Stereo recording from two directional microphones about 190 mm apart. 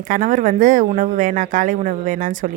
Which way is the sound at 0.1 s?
45° right (ahead or behind).